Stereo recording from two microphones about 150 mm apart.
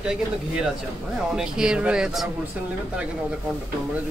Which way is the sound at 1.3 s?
5° right (ahead or behind).